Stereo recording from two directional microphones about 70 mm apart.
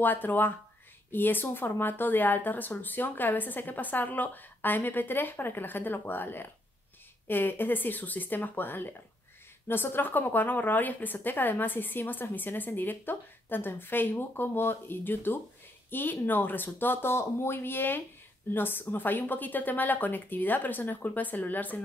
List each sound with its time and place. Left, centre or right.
0.0 s speech: left